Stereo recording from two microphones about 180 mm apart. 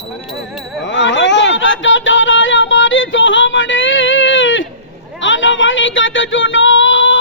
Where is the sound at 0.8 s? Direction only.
90° left.